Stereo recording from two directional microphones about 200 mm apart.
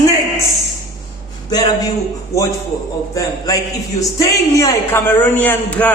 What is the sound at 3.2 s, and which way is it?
A woman's voice, 15° left (ahead or behind).